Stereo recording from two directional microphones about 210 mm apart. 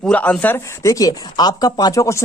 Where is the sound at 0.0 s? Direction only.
5° left (ahead or behind).